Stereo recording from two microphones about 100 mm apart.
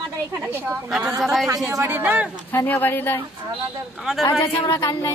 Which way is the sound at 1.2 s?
Centre (ahead or behind).